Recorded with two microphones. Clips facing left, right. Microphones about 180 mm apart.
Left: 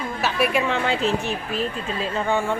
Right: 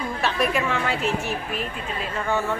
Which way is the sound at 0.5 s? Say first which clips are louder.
Left 2 dB; 20° left (ahead or behind).